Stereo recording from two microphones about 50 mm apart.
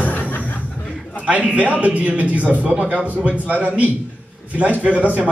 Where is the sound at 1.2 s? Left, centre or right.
Right.